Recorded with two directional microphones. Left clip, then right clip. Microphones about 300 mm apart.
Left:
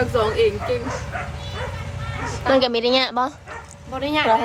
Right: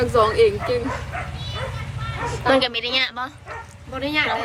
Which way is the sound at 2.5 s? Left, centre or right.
Centre.